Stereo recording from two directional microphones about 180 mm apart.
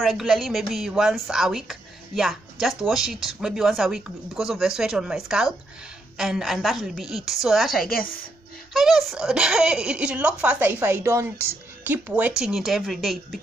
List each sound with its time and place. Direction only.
0.0 s a woman's voice: centre (ahead or behind)
7.9 s a woman's voice: 55° left (ahead or behind)
8.7 s a woman's voice: centre (ahead or behind)